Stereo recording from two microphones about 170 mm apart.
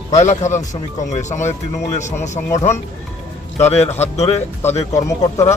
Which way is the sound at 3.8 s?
40° left (ahead or behind).